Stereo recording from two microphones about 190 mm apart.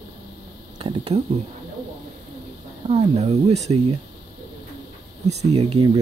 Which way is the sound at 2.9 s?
35° right (ahead or behind).